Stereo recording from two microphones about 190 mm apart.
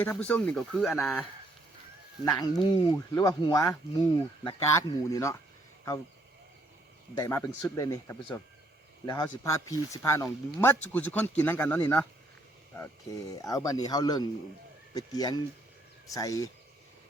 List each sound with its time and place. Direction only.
0.0 s speech: 5° left (ahead or behind)
2.2 s speech: 20° left (ahead or behind)
7.2 s speech: 15° left (ahead or behind)